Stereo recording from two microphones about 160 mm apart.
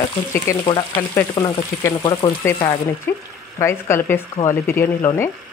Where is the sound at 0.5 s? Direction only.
20° left (ahead or behind).